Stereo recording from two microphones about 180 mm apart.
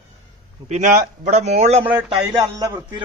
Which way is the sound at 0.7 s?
45° right (ahead or behind).